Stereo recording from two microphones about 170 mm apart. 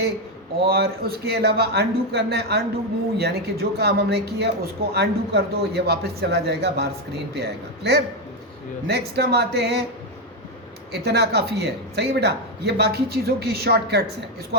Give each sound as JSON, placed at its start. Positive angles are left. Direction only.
{"t": 0.7, "sound": "speech", "side_deg": -65}
{"t": 11.0, "sound": "speech", "side_deg": -70}